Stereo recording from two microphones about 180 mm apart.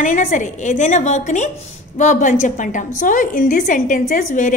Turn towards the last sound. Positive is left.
turn(degrees=45)  # may be behind; listen again after turning